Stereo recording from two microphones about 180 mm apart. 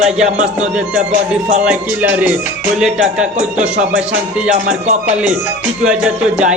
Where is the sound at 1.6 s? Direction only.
5° right (ahead or behind).